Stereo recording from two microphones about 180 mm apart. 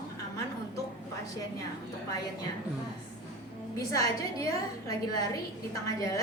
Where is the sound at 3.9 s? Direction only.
20° left (ahead or behind).